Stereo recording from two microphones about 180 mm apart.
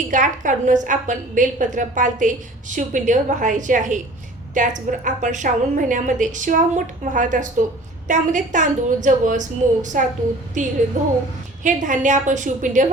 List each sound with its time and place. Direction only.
0.1 s a woman's voice: 45° right (ahead or behind)